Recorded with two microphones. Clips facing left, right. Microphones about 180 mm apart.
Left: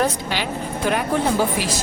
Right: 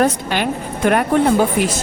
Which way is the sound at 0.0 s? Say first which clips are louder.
Right 5 dB; 55° right (ahead or behind).